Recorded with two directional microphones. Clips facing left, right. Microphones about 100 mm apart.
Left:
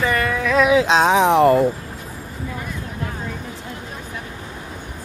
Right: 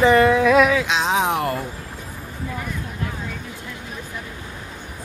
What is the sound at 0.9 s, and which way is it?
Speech, 35° left (ahead or behind).